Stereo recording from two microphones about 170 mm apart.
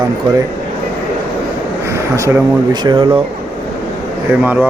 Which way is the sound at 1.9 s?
15° right (ahead or behind).